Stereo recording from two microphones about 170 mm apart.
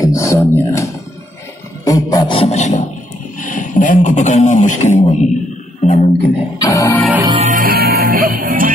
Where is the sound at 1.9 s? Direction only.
25° left (ahead or behind); by 2.8 s 40° left (ahead or behind).